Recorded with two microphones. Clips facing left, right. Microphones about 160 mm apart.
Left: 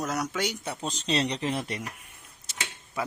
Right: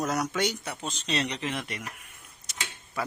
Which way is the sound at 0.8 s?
35° left (ahead or behind).